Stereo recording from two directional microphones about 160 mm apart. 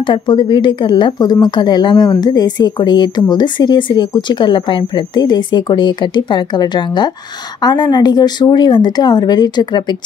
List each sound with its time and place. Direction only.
0.0 s speech: 30° left (ahead or behind)